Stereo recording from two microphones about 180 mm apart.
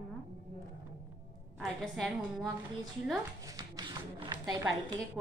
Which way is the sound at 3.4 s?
20° right (ahead or behind).